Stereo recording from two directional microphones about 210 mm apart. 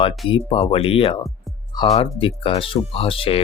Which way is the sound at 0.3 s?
25° left (ahead or behind).